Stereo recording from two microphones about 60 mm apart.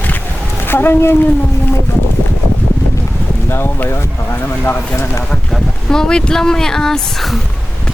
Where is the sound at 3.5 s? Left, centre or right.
Left.